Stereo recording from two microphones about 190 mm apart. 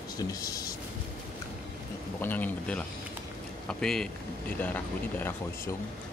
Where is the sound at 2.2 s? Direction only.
10° left (ahead or behind).